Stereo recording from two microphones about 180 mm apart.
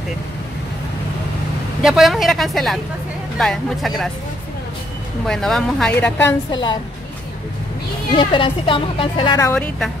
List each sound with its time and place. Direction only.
1.8 s a woman's voice: centre (ahead or behind)
5.2 s a woman's voice: centre (ahead or behind)
6.5 s a woman's voice: 25° left (ahead or behind)
8.2 s a woman's voice: 30° left (ahead or behind)
9.4 s a woman's voice: 10° left (ahead or behind)